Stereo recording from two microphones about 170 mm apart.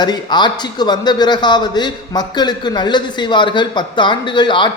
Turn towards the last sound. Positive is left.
turn(degrees=30)  # may be behind; listen again after turning